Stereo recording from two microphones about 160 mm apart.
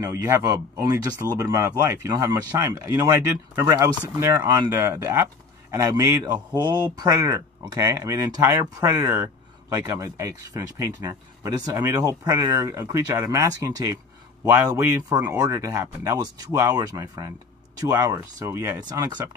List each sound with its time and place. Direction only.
0.0 s a man's voice: 20° right (ahead or behind)